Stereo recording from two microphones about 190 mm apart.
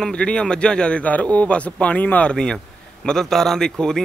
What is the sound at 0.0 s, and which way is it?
A man's voice, 5° left (ahead or behind).